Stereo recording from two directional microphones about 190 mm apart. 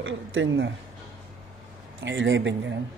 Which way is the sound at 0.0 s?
90° right.